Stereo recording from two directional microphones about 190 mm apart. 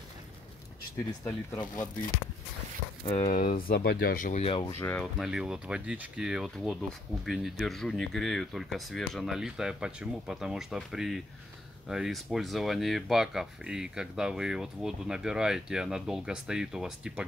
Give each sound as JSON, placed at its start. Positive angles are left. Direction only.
{"t": 1.2, "sound": "speech", "side_deg": 15}
{"t": 3.1, "sound": "speech", "side_deg": 35}
{"t": 3.3, "sound": "speech", "side_deg": 50}
{"t": 4.6, "sound": "speech", "side_deg": 10}